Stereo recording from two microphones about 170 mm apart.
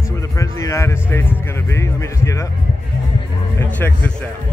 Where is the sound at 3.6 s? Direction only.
10° left (ahead or behind).